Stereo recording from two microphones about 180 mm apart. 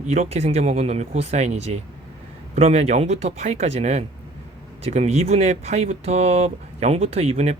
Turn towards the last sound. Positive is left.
turn(degrees=-40)  # may be behind; listen again after turning